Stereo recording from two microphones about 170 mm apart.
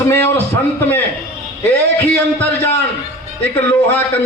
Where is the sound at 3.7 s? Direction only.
10° left (ahead or behind).